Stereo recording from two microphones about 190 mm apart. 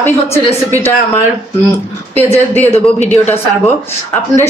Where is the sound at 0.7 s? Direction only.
10° left (ahead or behind).